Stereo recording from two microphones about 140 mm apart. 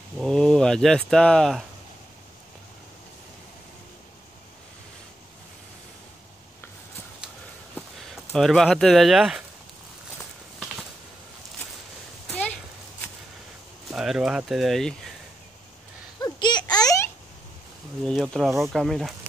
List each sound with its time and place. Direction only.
0.2 s speech: 5° left (ahead or behind)
7.7 s speech: 5° left (ahead or behind)
12.3 s a sound: 10° left (ahead or behind)
13.8 s speech: 5° right (ahead or behind)
16.2 s babbling: 30° left (ahead or behind)
18.0 s speech: 5° left (ahead or behind)